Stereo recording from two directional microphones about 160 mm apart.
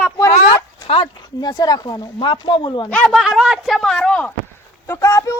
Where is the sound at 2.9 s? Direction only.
5° left (ahead or behind).